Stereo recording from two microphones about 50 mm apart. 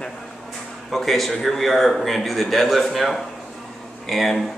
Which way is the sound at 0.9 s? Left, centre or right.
Centre.